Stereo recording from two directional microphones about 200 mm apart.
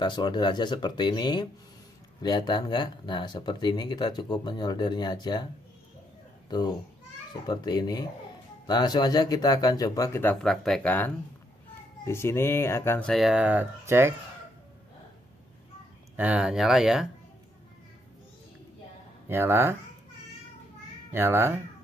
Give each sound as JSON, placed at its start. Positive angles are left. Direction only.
{"t": 0.0, "sound": "speech", "side_deg": 25}
{"t": 7.4, "sound": "speech", "side_deg": 20}
{"t": 10.4, "sound": "speech", "side_deg": 0}
{"t": 12.1, "sound": "speech", "side_deg": 15}
{"t": 13.1, "sound": "speech", "side_deg": -5}
{"t": 16.2, "sound": "speech", "side_deg": -5}
{"t": 19.2, "sound": "speech", "side_deg": -10}
{"t": 21.1, "sound": "speech", "side_deg": -10}